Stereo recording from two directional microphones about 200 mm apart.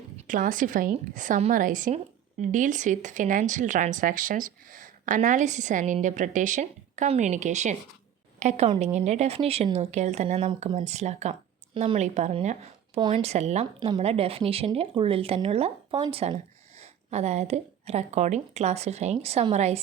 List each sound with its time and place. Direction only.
0.3 s speech: 40° right (ahead or behind)